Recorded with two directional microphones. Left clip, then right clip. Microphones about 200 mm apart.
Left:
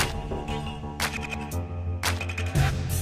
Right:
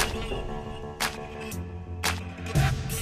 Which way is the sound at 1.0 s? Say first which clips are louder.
Left 2 dB; centre (ahead or behind).